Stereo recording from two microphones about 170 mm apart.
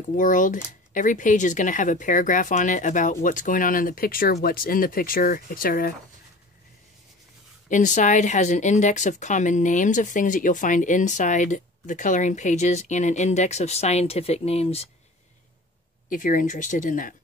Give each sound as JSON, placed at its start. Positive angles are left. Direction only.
{"t": 0.1, "sound": "speech", "side_deg": 50}
{"t": 7.7, "sound": "speech", "side_deg": 45}
{"t": 16.1, "sound": "speech", "side_deg": 50}